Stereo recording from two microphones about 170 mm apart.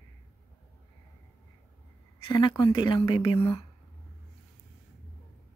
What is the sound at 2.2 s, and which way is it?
Speech, 30° left (ahead or behind).